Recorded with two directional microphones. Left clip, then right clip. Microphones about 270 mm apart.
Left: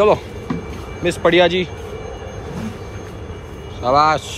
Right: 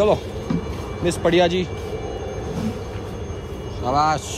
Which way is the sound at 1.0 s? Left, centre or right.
Centre.